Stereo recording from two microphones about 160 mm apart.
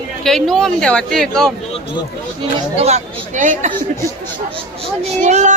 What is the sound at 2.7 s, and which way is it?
Speech, 40° right (ahead or behind).